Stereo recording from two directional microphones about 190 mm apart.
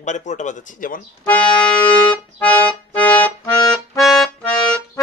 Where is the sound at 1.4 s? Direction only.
25° left (ahead or behind).